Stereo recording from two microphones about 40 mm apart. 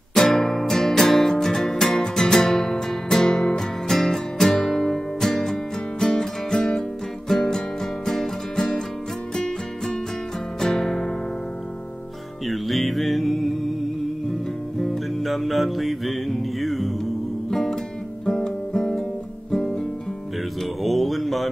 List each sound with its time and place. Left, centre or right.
0.1 s music: centre
7.2 s music: centre
12.4 s music: centre
14.8 s music: centre
19.5 s guitar: centre
20.8 s a sound: centre